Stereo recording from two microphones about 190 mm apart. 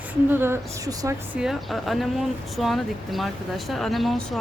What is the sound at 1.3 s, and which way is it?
Speech, centre (ahead or behind).